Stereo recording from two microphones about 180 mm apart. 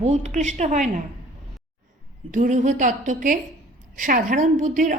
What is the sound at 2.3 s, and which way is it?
Speech, 45° right (ahead or behind).